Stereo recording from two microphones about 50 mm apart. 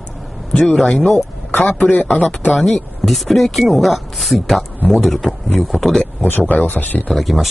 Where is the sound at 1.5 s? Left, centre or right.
Left.